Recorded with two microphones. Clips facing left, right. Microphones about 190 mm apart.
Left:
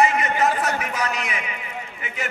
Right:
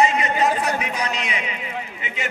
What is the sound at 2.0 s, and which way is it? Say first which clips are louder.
Speech: left 1 dB; 20° right (ahead or behind).